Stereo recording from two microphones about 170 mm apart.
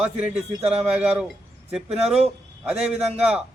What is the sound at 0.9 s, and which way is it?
A man's voice, 5° right (ahead or behind).